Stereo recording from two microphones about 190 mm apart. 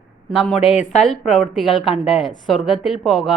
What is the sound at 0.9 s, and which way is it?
A woman's voice, centre (ahead or behind).